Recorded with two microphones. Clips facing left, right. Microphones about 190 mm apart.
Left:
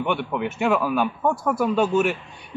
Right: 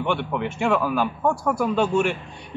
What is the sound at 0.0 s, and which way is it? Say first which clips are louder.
Speech: even; centre (ahead or behind).